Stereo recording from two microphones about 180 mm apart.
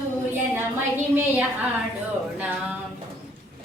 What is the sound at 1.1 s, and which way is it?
Child singing, 10° right (ahead or behind).